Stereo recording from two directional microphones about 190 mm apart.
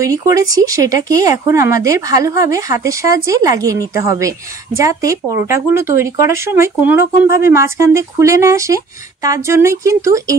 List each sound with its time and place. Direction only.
0.0 s speech: 15° right (ahead or behind)